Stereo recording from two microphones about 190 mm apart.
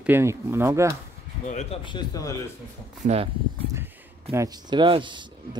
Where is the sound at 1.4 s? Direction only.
35° left (ahead or behind).